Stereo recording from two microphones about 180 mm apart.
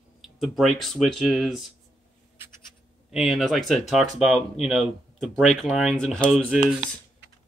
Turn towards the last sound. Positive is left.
turn(degrees=-5)  # may be behind; listen again after turning